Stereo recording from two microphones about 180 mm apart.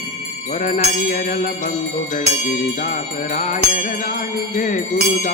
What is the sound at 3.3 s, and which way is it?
Music, 45° left (ahead or behind).